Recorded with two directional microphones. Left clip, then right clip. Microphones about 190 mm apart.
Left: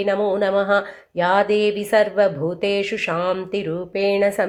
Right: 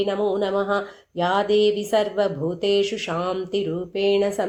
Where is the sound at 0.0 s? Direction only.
15° left (ahead or behind).